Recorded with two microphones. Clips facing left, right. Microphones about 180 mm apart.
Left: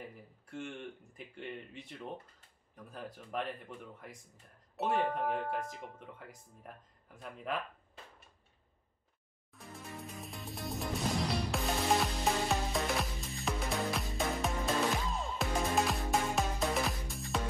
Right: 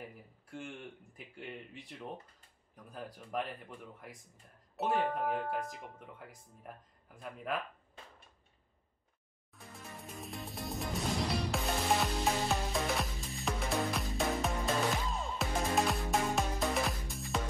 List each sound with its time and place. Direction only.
0.5 s speech: 5° right (ahead or behind)
4.7 s speech: centre (ahead or behind)
9.6 s music: centre (ahead or behind)